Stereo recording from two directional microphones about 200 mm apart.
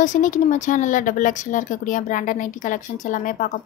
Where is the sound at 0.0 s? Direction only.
40° left (ahead or behind).